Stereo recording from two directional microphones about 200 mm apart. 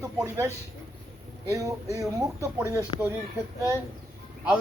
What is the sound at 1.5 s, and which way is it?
A man's voice, 15° right (ahead or behind).